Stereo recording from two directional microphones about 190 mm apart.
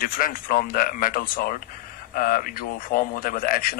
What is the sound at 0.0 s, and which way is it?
A man's voice, 45° left (ahead or behind).